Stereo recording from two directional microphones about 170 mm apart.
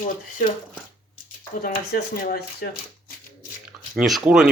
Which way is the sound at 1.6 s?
60° left (ahead or behind).